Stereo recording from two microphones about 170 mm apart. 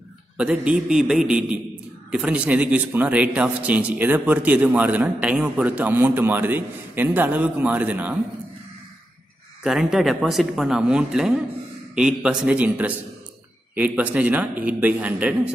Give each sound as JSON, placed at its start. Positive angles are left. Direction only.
{"t": 0.4, "sound": "a man's voice", "side_deg": -5}
{"t": 9.6, "sound": "a man's voice", "side_deg": -5}